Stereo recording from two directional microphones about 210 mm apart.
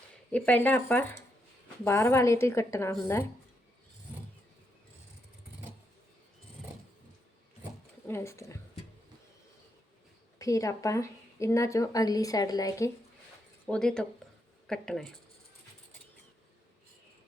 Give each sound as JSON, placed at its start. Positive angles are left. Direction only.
{"t": 0.3, "sound": "speech", "side_deg": 5}
{"t": 8.0, "sound": "speech", "side_deg": 10}
{"t": 10.3, "sound": "speech", "side_deg": 15}
{"t": 13.7, "sound": "speech", "side_deg": 5}